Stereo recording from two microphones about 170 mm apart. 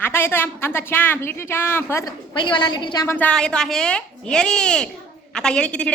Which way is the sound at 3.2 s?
5° left (ahead or behind).